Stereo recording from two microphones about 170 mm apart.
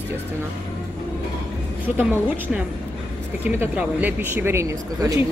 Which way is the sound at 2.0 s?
10° right (ahead or behind).